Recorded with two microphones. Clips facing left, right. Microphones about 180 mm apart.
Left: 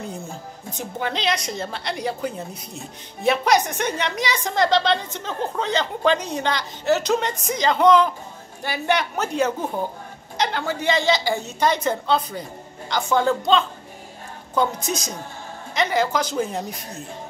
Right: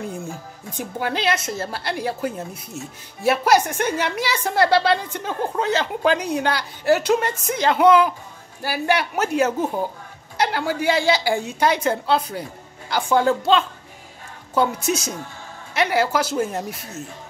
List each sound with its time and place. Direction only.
0.7 s a woman's voice: 10° right (ahead or behind)